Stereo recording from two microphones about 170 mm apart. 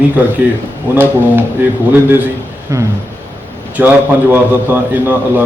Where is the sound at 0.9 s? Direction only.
10° right (ahead or behind).